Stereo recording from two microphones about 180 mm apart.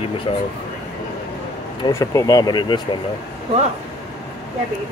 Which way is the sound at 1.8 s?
20° left (ahead or behind).